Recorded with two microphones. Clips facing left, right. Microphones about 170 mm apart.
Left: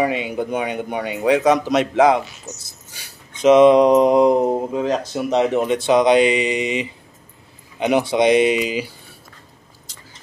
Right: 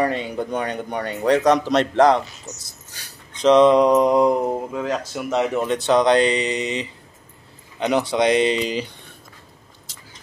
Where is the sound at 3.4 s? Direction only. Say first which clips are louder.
Left 3 dB; 10° left (ahead or behind).